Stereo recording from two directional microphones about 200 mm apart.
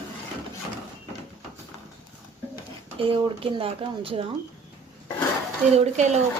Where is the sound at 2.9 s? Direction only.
25° right (ahead or behind).